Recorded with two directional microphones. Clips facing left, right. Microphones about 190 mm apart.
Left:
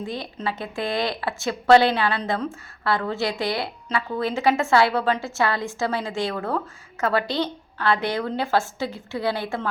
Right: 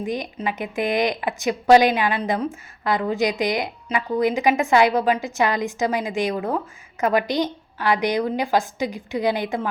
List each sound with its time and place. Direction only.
0.0 s speech: 15° right (ahead or behind)